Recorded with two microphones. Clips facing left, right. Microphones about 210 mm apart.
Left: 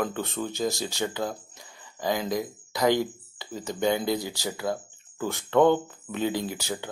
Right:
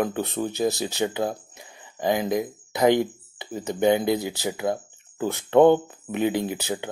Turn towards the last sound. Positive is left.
turn(degrees=-20)  # may be behind; listen again after turning